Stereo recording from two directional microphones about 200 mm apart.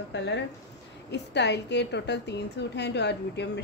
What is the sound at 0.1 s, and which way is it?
A woman's voice, 60° left (ahead or behind).